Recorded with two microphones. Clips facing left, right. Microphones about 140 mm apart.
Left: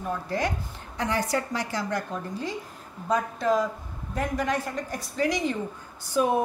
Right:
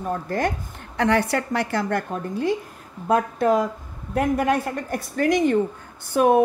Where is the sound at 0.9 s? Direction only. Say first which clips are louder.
Right 6 dB; 65° right (ahead or behind).